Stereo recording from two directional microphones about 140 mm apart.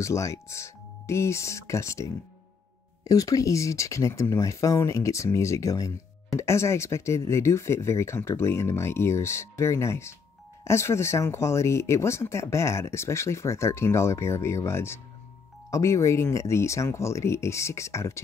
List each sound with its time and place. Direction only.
0.0 s speech: 20° left (ahead or behind)